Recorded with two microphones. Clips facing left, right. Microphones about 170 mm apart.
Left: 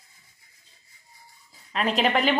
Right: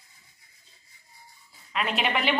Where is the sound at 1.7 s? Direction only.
35° left (ahead or behind).